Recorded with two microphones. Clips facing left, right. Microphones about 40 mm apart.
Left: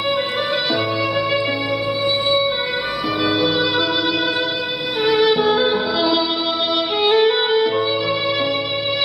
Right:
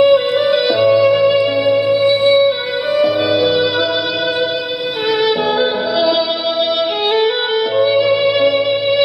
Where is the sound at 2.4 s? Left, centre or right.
Centre.